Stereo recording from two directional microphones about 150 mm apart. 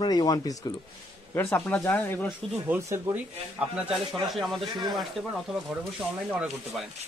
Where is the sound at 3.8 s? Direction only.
5° right (ahead or behind).